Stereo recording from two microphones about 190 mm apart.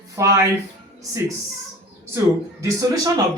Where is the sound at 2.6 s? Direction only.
20° right (ahead or behind).